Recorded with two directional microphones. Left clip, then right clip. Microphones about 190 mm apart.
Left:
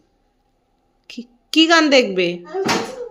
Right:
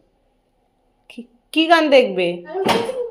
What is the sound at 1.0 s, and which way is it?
A woman's voice, 25° left (ahead or behind).